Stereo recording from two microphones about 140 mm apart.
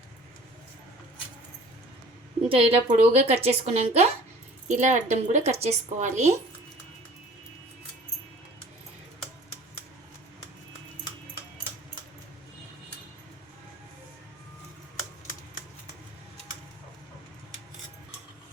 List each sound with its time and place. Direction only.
2.5 s a woman's voice: 40° right (ahead or behind)
4.7 s a woman's voice: 60° right (ahead or behind)